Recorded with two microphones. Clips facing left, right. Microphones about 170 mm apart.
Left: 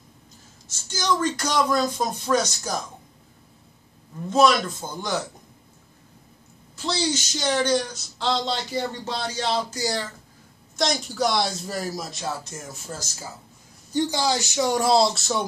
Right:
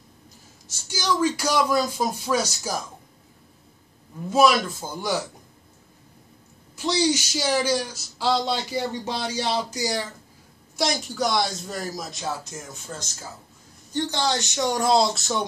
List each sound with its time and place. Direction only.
0.7 s speech: 10° right (ahead or behind)
4.3 s speech: 5° right (ahead or behind)
6.8 s speech: 15° right (ahead or behind)
10.8 s speech: 5° right (ahead or behind)